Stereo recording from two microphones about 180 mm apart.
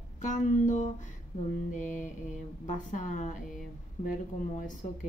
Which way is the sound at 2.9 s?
45° left (ahead or behind).